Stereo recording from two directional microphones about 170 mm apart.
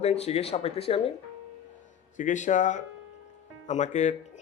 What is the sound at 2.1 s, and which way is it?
Speech, 45° left (ahead or behind).